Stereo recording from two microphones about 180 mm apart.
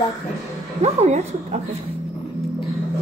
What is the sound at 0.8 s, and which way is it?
Speech, 40° right (ahead or behind).